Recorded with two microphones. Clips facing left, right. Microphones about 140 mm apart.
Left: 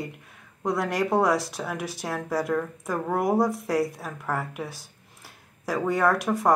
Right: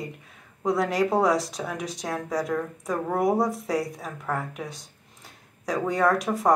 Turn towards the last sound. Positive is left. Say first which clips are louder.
# even
turn(degrees=0)  # may be behind; listen again after turning